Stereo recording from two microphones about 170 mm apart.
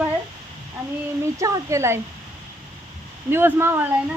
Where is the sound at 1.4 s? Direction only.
20° right (ahead or behind).